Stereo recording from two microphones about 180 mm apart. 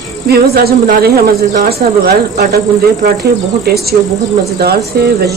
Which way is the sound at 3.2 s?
60° right (ahead or behind).